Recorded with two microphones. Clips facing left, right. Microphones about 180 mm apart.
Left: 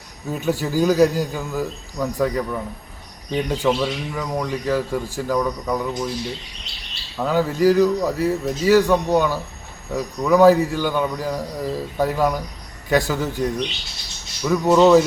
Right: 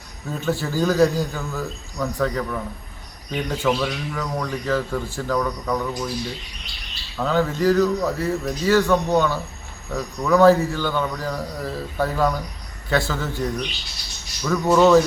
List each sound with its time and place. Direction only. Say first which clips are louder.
0.3 s speech: left 2 dB; 15° left (ahead or behind)
7.2 s speech: left 2 dB; 10° left (ahead or behind)